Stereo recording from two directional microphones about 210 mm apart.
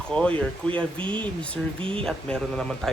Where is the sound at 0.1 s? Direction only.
5° left (ahead or behind).